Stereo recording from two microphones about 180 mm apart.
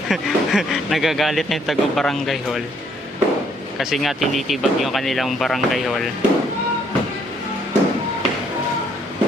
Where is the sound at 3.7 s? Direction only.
Centre (ahead or behind).